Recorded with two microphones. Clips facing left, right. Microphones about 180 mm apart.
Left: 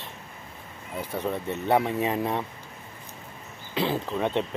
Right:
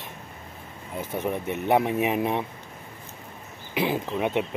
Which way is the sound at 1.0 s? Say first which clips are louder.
Right 1 dB; 20° right (ahead or behind).